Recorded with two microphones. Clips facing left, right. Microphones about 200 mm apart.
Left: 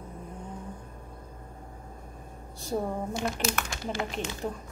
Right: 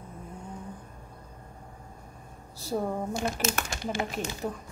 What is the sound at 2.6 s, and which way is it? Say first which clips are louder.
Speech: right 1 dB; centre (ahead or behind).